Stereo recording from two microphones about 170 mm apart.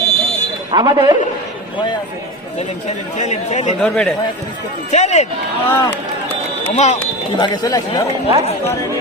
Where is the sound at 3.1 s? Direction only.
45° left (ahead or behind).